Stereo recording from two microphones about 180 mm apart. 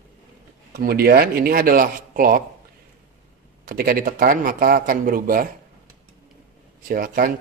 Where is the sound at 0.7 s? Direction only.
60° right (ahead or behind).